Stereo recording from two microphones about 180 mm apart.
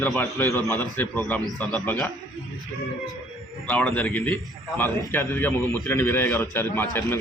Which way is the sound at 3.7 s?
10° left (ahead or behind).